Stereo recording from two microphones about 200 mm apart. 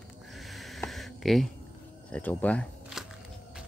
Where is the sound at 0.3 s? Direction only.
Centre (ahead or behind).